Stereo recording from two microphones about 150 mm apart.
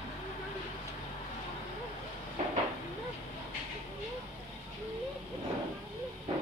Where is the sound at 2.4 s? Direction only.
55° right (ahead or behind).